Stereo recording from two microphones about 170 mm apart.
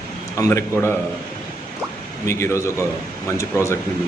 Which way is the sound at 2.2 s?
15° left (ahead or behind).